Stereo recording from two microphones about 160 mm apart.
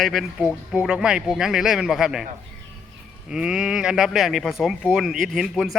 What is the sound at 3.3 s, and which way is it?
Speech, 5° right (ahead or behind).